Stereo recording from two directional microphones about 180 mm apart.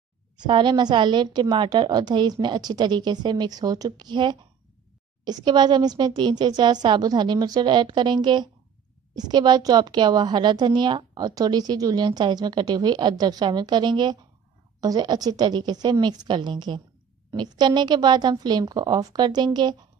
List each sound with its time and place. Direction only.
0.4 s a woman's voice: 25° right (ahead or behind)